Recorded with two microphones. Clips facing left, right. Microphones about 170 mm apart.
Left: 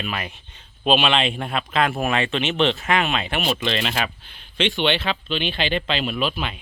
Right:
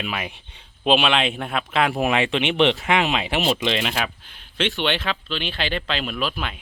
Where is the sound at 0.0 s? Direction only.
10° right (ahead or behind).